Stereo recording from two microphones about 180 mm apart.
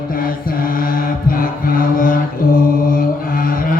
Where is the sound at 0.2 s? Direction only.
55° left (ahead or behind).